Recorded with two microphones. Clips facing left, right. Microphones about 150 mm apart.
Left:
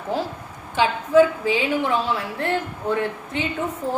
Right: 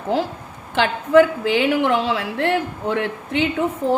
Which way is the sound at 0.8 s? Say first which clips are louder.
Right 2 dB; 70° right (ahead or behind).